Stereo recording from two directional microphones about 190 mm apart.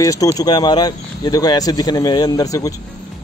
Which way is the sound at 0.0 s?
20° left (ahead or behind).